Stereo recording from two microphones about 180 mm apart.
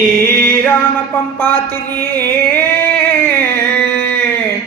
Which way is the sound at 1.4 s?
10° left (ahead or behind).